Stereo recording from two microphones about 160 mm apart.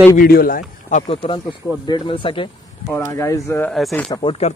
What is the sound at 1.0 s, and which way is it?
Speech, 35° left (ahead or behind).